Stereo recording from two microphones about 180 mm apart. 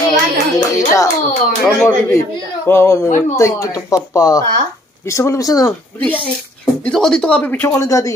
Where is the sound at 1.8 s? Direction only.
15° left (ahead or behind).